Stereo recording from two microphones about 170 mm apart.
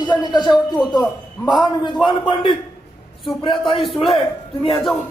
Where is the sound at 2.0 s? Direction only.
25° left (ahead or behind).